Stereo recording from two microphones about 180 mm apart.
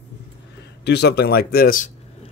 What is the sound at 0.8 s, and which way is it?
Speech, 65° left (ahead or behind).